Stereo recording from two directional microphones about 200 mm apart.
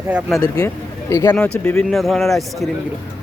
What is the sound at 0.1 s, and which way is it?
Speech, 5° right (ahead or behind).